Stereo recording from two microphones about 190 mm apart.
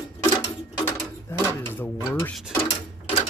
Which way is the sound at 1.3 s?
10° left (ahead or behind).